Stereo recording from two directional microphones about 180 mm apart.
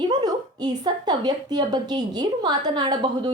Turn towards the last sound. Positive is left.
turn(degrees=-25)  # may be behind; listen again after turning